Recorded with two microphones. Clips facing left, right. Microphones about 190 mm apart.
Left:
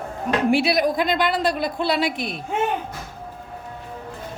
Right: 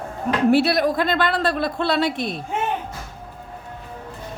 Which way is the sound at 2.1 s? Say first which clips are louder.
Right 2 dB; 30° right (ahead or behind).